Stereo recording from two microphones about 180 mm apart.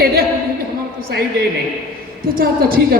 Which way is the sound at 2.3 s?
55° right (ahead or behind).